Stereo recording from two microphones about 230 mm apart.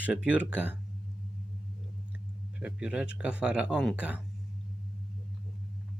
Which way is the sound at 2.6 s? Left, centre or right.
Centre.